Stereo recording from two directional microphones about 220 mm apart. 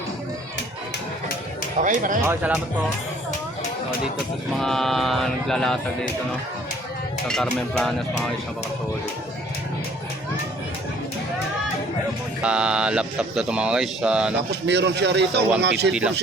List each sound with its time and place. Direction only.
1.8 s speech: 35° right (ahead or behind)
2.2 s speech: 10° right (ahead or behind)
4.5 s speech: centre (ahead or behind)
7.3 s speech: 5° left (ahead or behind)
12.4 s speech: 5° right (ahead or behind)
14.7 s a man's voice: 50° right (ahead or behind)
15.9 s speech: 5° right (ahead or behind)